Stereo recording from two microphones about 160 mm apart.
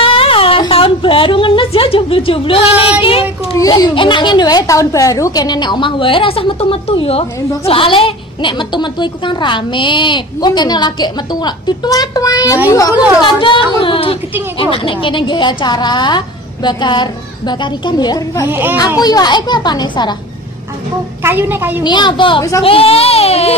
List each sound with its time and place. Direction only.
0.0 s a sound: 35° left (ahead or behind)
3.0 s speech: 35° left (ahead or behind)
3.5 s a woman's voice: 25° left (ahead or behind)
18.5 s a woman's voice: 10° right (ahead or behind)
18.9 s a woman's voice: 25° left (ahead or behind)
21.2 s a woman's voice: 15° right (ahead or behind)
21.8 s a woman's voice: 30° left (ahead or behind)